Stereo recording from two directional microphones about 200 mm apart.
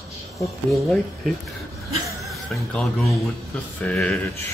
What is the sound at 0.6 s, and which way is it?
Speech, centre (ahead or behind).